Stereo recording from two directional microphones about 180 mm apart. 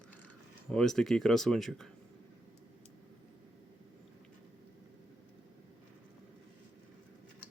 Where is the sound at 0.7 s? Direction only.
5° left (ahead or behind).